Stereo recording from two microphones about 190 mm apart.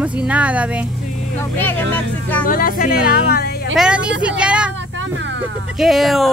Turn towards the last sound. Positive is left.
turn(degrees=0)  # may be behind; listen again after turning